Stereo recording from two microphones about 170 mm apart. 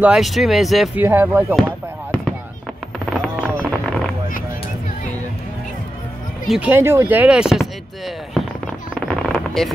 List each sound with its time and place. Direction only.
0.0 s speech: 5° right (ahead or behind)
1.0 s speech: 10° right (ahead or behind)
1.5 s fireworks: centre (ahead or behind)
3.1 s a sound: 5° left (ahead or behind)
6.4 s speech: 5° right (ahead or behind)
8.9 s a sound: 5° left (ahead or behind)